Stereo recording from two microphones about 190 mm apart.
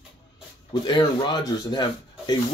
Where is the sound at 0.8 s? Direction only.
20° left (ahead or behind).